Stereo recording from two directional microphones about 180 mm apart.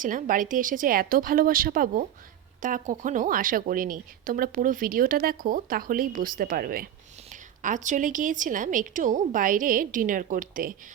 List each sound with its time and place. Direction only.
0.0 s a woman's voice: 45° right (ahead or behind)